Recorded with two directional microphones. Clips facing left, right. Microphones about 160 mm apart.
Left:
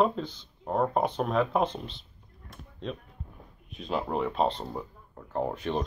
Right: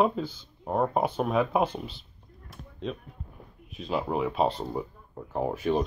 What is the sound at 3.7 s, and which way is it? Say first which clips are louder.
Speech: right 1 dB; centre (ahead or behind).